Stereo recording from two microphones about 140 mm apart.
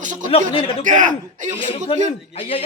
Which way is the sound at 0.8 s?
65° right (ahead or behind).